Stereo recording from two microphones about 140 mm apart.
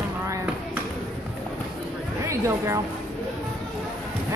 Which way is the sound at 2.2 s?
20° right (ahead or behind).